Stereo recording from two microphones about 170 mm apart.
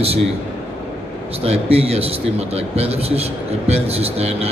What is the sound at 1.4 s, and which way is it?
Speech, 35° right (ahead or behind).